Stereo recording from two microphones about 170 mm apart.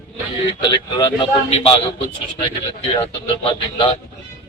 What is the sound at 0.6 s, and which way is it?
Speech, 30° left (ahead or behind).